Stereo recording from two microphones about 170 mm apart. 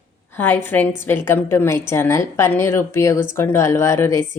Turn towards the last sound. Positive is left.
turn(degrees=15)  # may be behind; listen again after turning